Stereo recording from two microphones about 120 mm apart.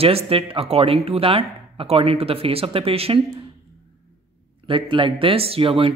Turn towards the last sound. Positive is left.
turn(degrees=-50)  # may be behind; listen again after turning